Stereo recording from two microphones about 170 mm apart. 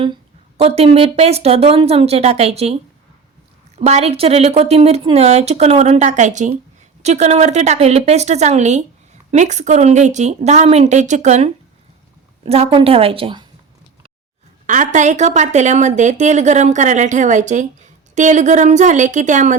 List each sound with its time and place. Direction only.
0.0 s speech: 30° right (ahead or behind)
3.8 s a woman's voice: 40° right (ahead or behind)
14.7 s a woman's voice: 45° right (ahead or behind)